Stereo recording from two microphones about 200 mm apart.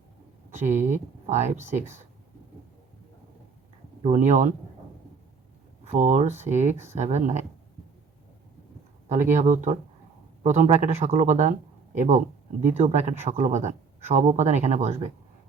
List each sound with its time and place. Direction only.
0.5 s speech: 35° right (ahead or behind)
4.0 s speech: 40° right (ahead or behind)
5.8 s speech: 35° right (ahead or behind)
9.0 s speech: 40° right (ahead or behind)